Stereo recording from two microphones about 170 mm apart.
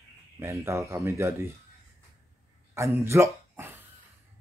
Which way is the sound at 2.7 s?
15° right (ahead or behind).